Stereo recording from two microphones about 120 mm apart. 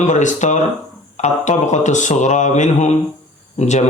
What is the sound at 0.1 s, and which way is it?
Speech, 90° left.